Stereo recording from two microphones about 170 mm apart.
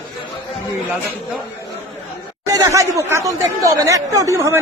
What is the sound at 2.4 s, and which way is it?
Chatter, 20° right (ahead or behind).